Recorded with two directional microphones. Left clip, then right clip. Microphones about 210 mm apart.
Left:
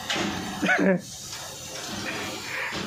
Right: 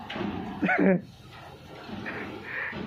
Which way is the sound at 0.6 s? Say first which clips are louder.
Left 2 dB; centre (ahead or behind).